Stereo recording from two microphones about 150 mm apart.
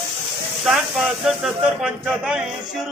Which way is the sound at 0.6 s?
Centre (ahead or behind).